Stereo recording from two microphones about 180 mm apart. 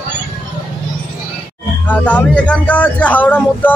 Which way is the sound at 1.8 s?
10° left (ahead or behind).